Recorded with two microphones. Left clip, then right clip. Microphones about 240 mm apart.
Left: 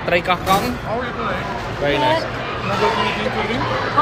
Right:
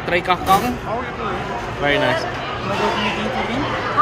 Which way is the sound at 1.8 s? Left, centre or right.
Centre.